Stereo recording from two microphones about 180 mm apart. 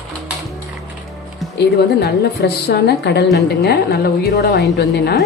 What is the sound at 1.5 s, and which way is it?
A woman's voice, 65° left (ahead or behind).